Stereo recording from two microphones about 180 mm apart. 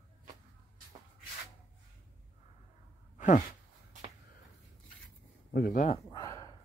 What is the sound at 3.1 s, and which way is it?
Sigh, 45° left (ahead or behind).